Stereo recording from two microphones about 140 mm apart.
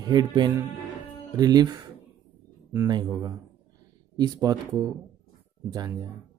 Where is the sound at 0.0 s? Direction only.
30° right (ahead or behind).